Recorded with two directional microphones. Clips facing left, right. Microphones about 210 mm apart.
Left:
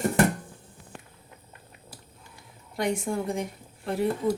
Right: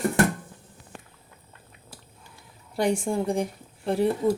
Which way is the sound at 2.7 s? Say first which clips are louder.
Right 3 dB; 30° right (ahead or behind).